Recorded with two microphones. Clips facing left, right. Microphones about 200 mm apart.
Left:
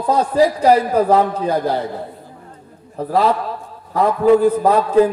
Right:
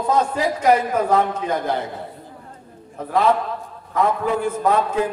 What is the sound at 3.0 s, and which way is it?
A man's voice, 35° left (ahead or behind).